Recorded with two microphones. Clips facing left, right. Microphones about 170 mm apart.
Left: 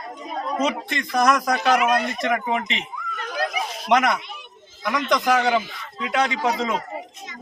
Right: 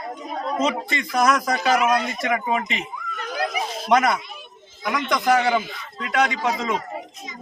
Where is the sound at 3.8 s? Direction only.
5° right (ahead or behind).